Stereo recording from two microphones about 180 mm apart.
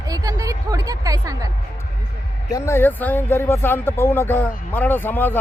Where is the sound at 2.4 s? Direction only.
15° left (ahead or behind).